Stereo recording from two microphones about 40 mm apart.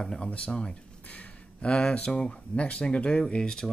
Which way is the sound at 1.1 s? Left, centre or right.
Left.